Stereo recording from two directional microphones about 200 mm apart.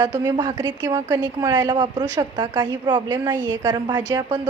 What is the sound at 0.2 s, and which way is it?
A woman's voice, 20° right (ahead or behind).